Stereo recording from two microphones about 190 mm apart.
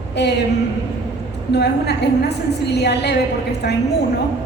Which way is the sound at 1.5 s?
60° left (ahead or behind).